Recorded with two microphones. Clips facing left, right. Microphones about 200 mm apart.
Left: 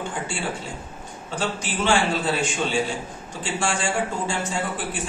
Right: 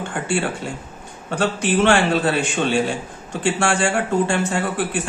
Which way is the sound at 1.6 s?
65° right (ahead or behind).